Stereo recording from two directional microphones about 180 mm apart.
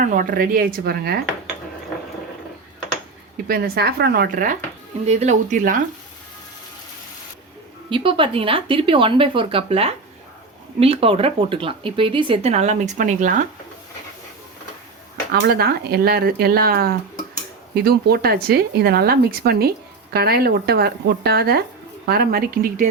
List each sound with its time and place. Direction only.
0.0 s speech: 50° right (ahead or behind)
3.4 s speech: 60° right (ahead or behind)
5.0 s speech: 40° right (ahead or behind)
7.9 s speech: 25° right (ahead or behind); by 13.3 s 45° right (ahead or behind)
15.3 s speech: 65° right (ahead or behind)